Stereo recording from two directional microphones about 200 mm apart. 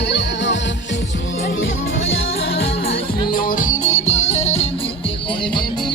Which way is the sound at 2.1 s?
75° left (ahead or behind).